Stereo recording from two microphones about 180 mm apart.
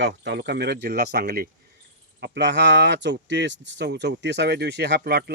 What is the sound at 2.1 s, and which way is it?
Speech, 70° right (ahead or behind).